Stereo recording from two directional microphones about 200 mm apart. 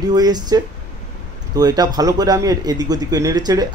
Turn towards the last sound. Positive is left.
turn(degrees=-20)  # may be behind; listen again after turning